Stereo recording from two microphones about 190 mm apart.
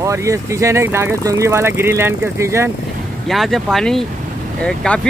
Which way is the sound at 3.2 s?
Centre (ahead or behind).